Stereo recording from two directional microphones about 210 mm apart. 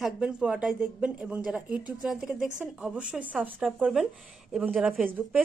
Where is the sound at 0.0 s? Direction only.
5° right (ahead or behind).